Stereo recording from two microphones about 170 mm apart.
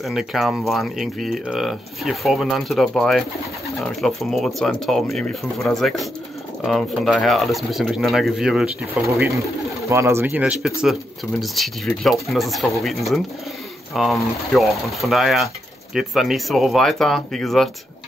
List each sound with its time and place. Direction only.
0.0 s speech: centre (ahead or behind)
9.0 s speech: 15° right (ahead or behind); by 17.6 s centre (ahead or behind)